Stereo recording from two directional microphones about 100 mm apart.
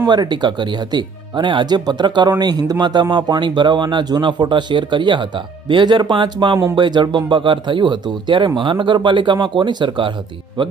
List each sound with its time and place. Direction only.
0.1 s speech: 50° right (ahead or behind)